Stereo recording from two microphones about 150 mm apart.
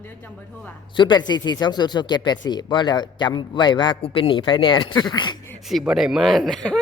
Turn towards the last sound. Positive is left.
turn(degrees=0)  # may be behind; listen again after turning